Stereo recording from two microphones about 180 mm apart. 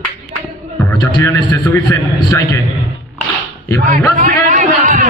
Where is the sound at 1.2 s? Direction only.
10° left (ahead or behind).